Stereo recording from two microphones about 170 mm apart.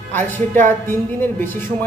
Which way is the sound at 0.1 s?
10° left (ahead or behind).